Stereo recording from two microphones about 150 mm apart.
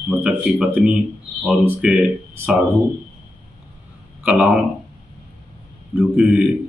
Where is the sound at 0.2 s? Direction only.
5° right (ahead or behind).